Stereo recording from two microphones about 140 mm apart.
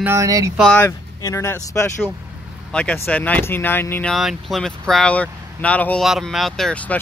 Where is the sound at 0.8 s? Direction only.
20° left (ahead or behind).